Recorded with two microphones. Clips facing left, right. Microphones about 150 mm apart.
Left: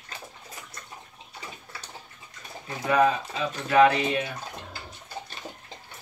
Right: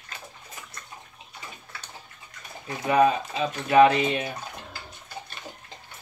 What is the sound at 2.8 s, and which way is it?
Speech, 20° right (ahead or behind).